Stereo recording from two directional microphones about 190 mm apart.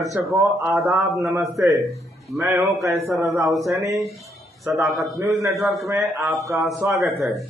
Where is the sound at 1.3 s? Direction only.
15° right (ahead or behind).